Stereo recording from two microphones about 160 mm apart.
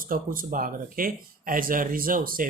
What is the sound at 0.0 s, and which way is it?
Speech, 60° right (ahead or behind).